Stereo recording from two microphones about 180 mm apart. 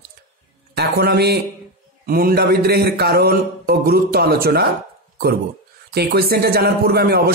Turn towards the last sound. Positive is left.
turn(degrees=-60)  # may be behind; listen again after turning